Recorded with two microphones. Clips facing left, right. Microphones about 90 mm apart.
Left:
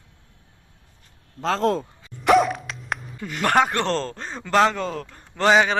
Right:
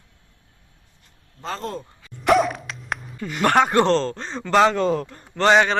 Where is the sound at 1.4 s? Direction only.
90° left.